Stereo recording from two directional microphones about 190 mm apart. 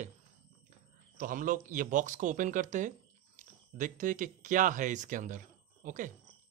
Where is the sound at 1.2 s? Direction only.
45° right (ahead or behind).